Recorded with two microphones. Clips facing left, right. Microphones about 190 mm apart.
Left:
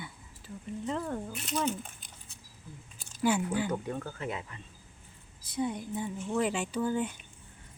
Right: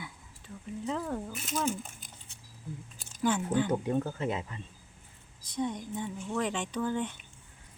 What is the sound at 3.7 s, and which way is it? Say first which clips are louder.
Speech: right 5 dB; 20° right (ahead or behind).